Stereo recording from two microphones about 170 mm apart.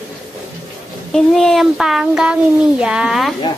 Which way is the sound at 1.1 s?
Centre (ahead or behind).